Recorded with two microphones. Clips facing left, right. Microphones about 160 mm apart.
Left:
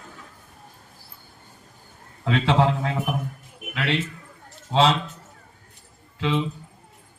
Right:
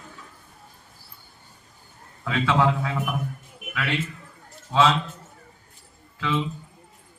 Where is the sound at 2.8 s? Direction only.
40° left (ahead or behind).